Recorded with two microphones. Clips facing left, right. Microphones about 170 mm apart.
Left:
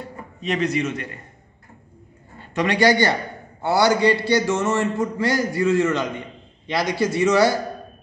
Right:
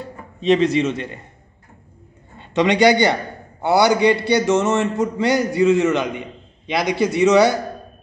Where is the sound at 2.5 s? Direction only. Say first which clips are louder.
Right 4 dB; 20° right (ahead or behind).